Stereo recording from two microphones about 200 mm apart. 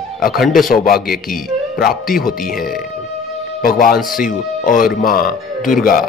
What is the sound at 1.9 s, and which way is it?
Speech, 45° left (ahead or behind).